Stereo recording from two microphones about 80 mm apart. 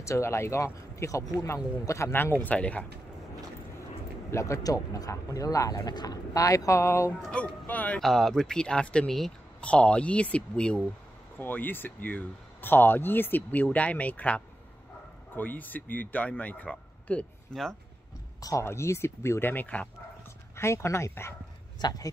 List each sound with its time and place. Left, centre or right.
0.0 s speech: left
2.3 s speech: centre
4.3 s speech: left
7.6 s speech: centre
8.0 s speech: centre
11.3 s speech: left
18.4 s speech: left
19.5 s speech: centre
20.5 s speech: left
21.7 s speech: left